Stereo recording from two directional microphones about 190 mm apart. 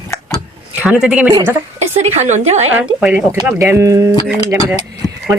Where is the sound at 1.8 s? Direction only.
35° right (ahead or behind).